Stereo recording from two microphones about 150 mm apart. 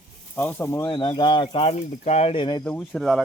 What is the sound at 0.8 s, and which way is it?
Speech, 30° left (ahead or behind).